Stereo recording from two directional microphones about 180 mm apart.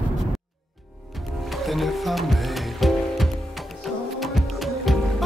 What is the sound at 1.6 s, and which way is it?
Music, centre (ahead or behind).